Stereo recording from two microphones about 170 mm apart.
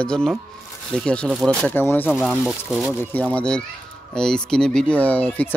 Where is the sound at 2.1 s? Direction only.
Centre (ahead or behind).